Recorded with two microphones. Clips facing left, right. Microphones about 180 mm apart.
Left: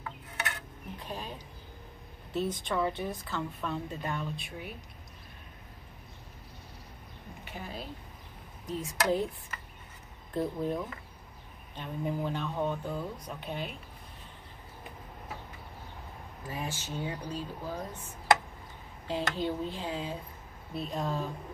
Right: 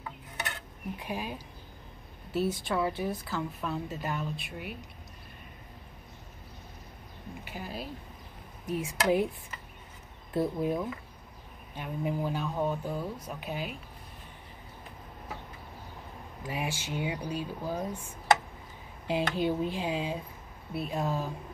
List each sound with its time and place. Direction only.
0.9 s a sound: 10° right (ahead or behind)
2.3 s a woman's voice: 5° right (ahead or behind)
7.5 s a woman's voice: 5° right (ahead or behind)
10.3 s speech: 10° right (ahead or behind)
16.4 s speech: 15° right (ahead or behind)